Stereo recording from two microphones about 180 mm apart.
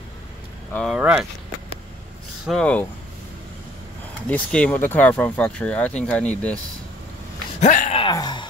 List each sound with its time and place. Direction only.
0.7 s speech: 5° right (ahead or behind)
2.4 s speech: 5° left (ahead or behind)
4.3 s speech: 5° left (ahead or behind)
7.6 s speech: 45° left (ahead or behind)
7.9 s a sound: 25° left (ahead or behind)